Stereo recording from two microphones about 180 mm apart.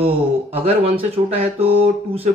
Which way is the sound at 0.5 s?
30° right (ahead or behind).